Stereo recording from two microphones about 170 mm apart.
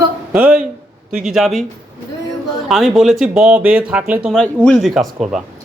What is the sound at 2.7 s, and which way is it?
Speech, centre (ahead or behind).